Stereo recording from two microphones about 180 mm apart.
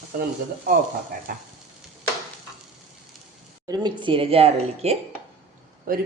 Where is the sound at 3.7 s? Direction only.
25° right (ahead or behind).